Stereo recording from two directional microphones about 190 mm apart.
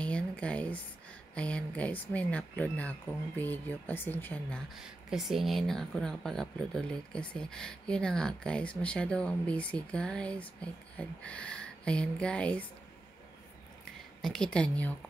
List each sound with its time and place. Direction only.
0.0 s a sound: 5° left (ahead or behind)
1.3 s speech: 5° left (ahead or behind)
4.7 s speech: centre (ahead or behind)
14.2 s speech: 5° left (ahead or behind)